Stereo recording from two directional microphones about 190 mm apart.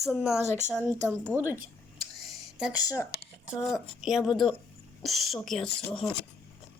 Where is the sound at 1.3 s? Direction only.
10° right (ahead or behind).